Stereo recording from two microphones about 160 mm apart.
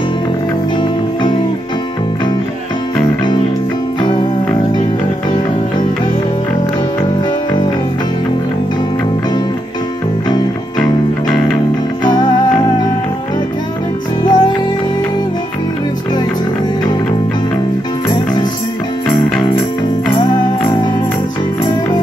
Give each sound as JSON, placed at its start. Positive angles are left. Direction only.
{"t": 10.8, "sound": "music", "side_deg": 5}
{"t": 12.0, "sound": "music", "side_deg": 25}
{"t": 14.2, "sound": "music", "side_deg": 25}